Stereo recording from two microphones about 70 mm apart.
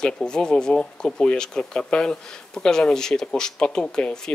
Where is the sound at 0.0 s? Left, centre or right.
Centre.